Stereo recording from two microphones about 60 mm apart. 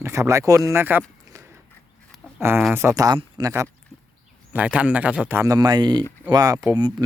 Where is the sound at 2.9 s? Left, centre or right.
Right.